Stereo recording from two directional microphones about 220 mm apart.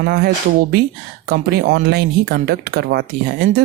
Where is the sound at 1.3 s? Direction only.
45° right (ahead or behind).